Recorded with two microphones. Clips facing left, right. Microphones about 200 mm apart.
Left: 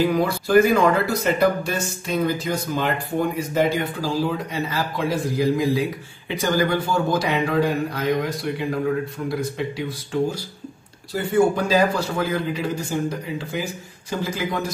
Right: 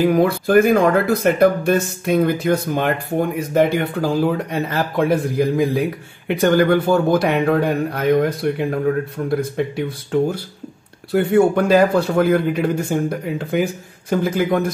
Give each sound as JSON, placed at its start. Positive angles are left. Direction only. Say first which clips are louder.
{"t": 0.0, "sound": "speech", "louder": "right 5 dB", "side_deg": -50}